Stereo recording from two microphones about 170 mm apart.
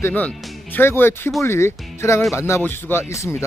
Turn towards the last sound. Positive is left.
turn(degrees=15)  # may be behind; listen again after turning